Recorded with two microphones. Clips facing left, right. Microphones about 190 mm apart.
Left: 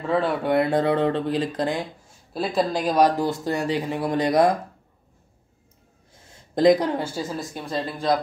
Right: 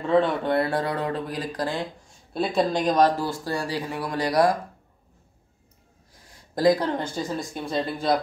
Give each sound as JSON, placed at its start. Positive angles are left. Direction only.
{"t": 0.0, "sound": "speech", "side_deg": 5}
{"t": 2.3, "sound": "speech", "side_deg": 0}
{"t": 6.5, "sound": "speech", "side_deg": 20}
{"t": 6.9, "sound": "speech", "side_deg": 5}